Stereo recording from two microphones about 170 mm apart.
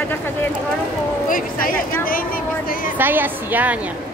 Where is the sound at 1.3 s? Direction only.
55° left (ahead or behind).